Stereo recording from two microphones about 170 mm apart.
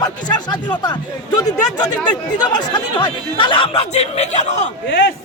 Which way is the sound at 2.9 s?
25° left (ahead or behind).